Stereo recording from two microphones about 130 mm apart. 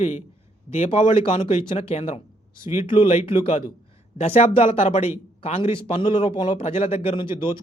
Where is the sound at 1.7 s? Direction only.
55° left (ahead or behind).